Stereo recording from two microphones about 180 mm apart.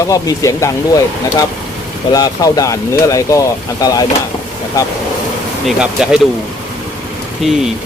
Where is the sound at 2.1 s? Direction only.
20° left (ahead or behind).